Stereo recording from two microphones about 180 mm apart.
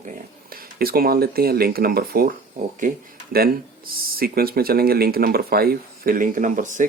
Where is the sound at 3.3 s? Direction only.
55° right (ahead or behind).